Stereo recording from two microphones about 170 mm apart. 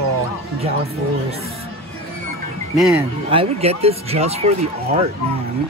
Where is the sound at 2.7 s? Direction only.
Centre (ahead or behind).